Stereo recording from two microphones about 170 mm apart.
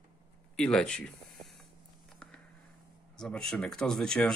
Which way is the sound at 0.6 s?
5° left (ahead or behind).